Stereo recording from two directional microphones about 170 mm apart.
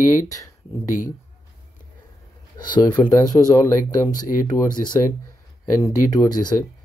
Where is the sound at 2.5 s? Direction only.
25° left (ahead or behind).